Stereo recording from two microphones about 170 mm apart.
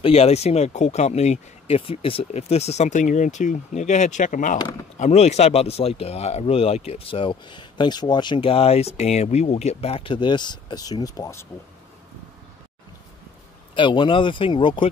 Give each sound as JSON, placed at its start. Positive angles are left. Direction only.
{"t": 0.0, "sound": "speech", "side_deg": 35}
{"t": 13.7, "sound": "speech", "side_deg": 30}